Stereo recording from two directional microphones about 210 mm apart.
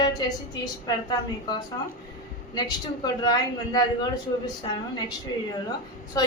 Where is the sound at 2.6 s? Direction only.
20° left (ahead or behind).